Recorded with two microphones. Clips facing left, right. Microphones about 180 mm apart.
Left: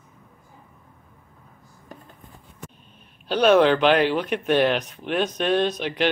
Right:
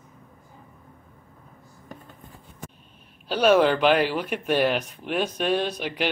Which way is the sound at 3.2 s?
10° right (ahead or behind).